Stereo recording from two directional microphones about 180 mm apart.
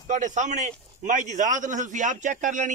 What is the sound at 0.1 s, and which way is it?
A man's voice, 45° right (ahead or behind).